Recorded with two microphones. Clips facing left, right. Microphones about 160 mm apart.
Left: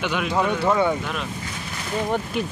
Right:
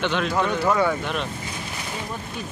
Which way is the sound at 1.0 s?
Centre (ahead or behind).